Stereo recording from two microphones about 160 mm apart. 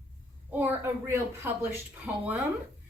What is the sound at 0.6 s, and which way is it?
Speech, 15° right (ahead or behind).